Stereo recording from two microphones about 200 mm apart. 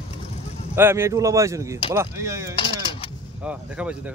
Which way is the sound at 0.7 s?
10° right (ahead or behind).